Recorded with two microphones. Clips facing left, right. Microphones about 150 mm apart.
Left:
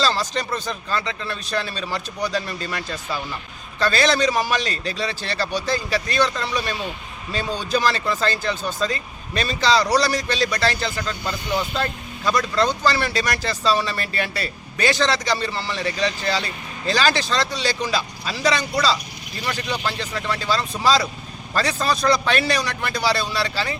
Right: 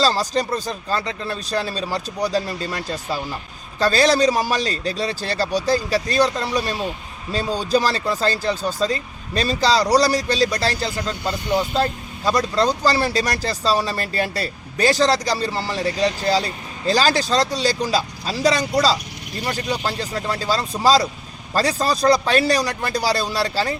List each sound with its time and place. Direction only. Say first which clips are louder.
0.0 s speech: right 3 dB; 40° right (ahead or behind)